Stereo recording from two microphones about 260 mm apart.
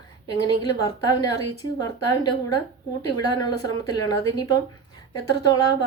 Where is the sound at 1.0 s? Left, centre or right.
Centre.